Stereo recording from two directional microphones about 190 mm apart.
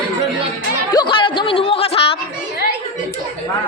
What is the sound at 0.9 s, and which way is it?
Speech, 25° left (ahead or behind).